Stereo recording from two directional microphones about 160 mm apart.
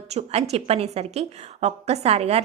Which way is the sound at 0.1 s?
40° right (ahead or behind).